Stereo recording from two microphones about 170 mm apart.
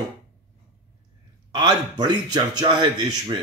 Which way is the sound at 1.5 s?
25° right (ahead or behind).